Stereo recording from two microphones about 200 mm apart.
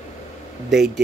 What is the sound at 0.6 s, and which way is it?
Speech, centre (ahead or behind).